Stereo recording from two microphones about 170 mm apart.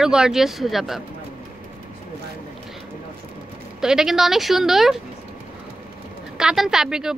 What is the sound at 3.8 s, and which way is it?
A woman's voice, 5° right (ahead or behind).